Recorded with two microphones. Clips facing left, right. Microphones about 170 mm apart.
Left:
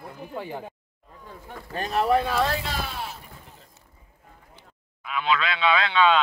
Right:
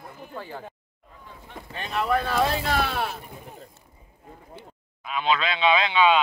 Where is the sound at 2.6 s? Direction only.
65° right (ahead or behind).